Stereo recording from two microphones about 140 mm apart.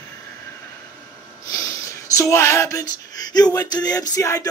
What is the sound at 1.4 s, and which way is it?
Speech, 25° left (ahead or behind).